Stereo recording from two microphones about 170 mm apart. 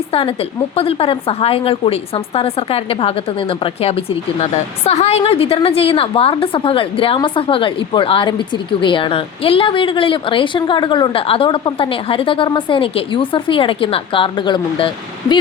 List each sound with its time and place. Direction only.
0.1 s a woman's voice: 30° left (ahead or behind)